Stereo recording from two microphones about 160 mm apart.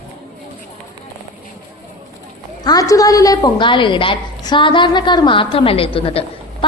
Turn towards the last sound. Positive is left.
turn(degrees=35)  # may be behind; listen again after turning